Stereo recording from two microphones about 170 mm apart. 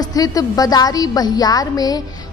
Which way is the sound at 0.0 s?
20° left (ahead or behind).